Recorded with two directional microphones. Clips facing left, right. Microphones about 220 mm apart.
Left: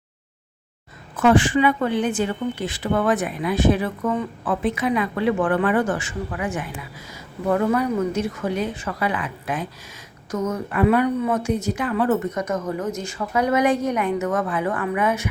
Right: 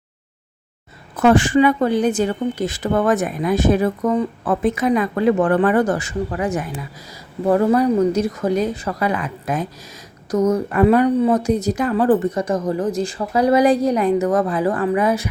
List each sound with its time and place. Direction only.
1.1 s speech: 40° right (ahead or behind)